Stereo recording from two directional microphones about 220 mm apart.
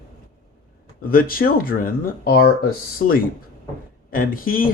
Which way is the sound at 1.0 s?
40° left (ahead or behind).